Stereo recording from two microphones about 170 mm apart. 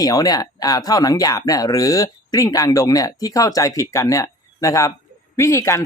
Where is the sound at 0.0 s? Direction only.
20° left (ahead or behind).